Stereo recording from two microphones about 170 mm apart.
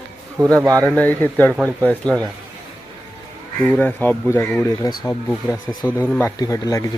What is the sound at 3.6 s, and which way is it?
A man's voice, 10° left (ahead or behind).